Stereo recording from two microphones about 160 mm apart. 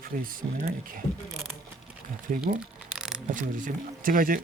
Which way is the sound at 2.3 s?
60° right (ahead or behind).